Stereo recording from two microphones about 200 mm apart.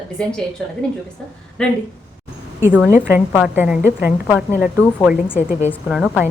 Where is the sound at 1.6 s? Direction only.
5° left (ahead or behind).